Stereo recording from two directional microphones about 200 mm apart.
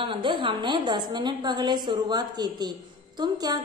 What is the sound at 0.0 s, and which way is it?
A woman's voice, 25° right (ahead or behind).